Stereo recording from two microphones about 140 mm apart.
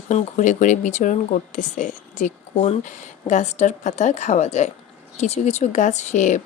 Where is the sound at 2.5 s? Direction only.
45° left (ahead or behind).